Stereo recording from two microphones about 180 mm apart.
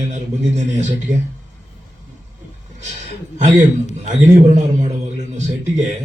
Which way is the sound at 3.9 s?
40° right (ahead or behind).